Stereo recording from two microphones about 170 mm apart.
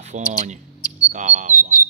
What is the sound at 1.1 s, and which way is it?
Bird, 45° right (ahead or behind).